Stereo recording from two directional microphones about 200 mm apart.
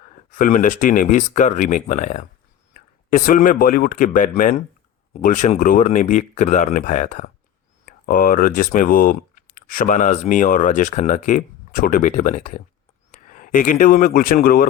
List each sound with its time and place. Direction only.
0.3 s a man's voice: 40° left (ahead or behind)